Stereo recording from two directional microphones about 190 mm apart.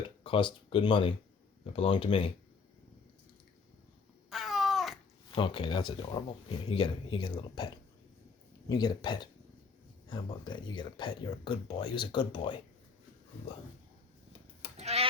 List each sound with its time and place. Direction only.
0.2 s speech: 25° left (ahead or behind)
4.3 s babbling: centre (ahead or behind)
5.3 s speech: 25° left (ahead or behind)
8.7 s speech: 20° left (ahead or behind)
14.8 s bleat: 35° right (ahead or behind)